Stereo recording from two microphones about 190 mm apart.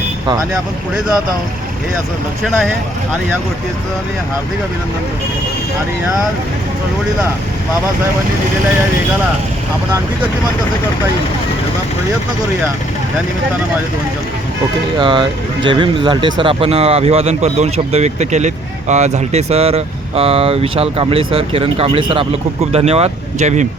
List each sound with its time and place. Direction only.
14.9 s speech: 25° right (ahead or behind)